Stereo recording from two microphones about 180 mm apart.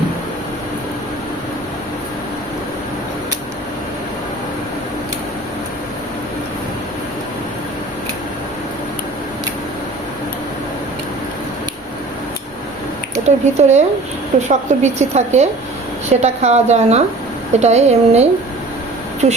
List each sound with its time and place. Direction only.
13.2 s a woman's voice: 40° right (ahead or behind)